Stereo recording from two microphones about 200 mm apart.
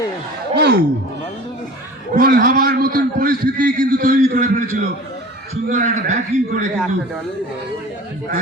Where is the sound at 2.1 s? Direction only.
50° right (ahead or behind).